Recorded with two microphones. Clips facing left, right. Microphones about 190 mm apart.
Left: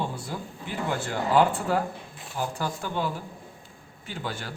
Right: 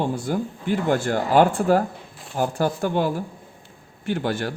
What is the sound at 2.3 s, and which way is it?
Speech, 50° right (ahead or behind).